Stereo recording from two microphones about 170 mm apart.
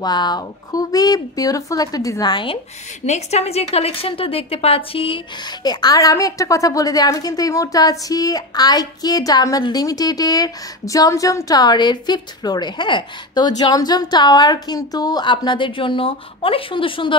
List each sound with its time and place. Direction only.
0.0 s a woman's voice: 25° left (ahead or behind)
3.1 s a woman's voice: 40° left (ahead or behind)